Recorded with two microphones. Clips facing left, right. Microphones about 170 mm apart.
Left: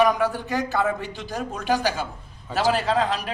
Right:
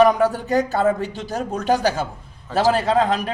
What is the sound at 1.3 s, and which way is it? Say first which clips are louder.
A man's voice: right 4 dB; 45° right (ahead or behind).